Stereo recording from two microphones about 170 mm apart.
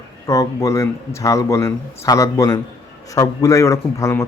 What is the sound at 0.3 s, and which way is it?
A man's voice, 20° left (ahead or behind).